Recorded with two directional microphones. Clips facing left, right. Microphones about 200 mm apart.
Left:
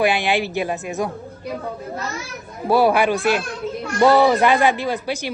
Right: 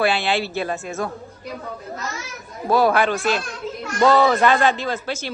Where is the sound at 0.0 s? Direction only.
15° left (ahead or behind).